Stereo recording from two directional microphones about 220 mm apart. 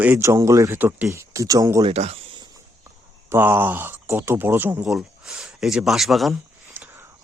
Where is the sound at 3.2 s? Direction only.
10° right (ahead or behind).